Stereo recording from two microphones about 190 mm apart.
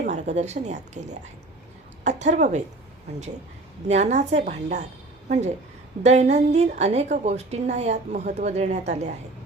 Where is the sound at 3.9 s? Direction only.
35° right (ahead or behind).